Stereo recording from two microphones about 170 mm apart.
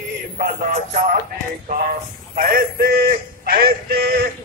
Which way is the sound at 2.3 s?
55° right (ahead or behind).